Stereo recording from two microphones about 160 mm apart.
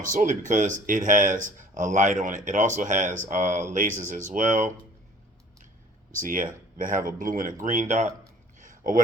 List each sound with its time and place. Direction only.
0.0 s speech: 55° right (ahead or behind)
6.1 s speech: 60° right (ahead or behind)
8.5 s a sound: 60° right (ahead or behind)